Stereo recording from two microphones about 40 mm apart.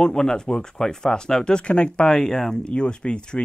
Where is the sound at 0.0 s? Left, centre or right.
Centre.